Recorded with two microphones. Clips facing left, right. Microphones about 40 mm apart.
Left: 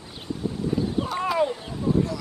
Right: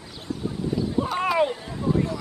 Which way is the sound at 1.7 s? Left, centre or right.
Right.